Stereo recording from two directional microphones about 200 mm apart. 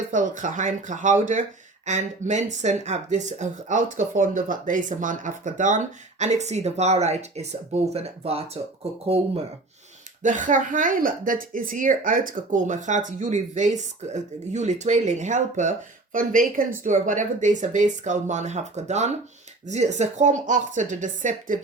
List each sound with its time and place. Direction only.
0.1 s speech: 40° right (ahead or behind)
10.2 s speech: 40° right (ahead or behind)